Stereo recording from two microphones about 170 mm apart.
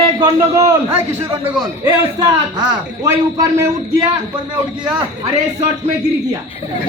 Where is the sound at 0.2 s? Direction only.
20° right (ahead or behind).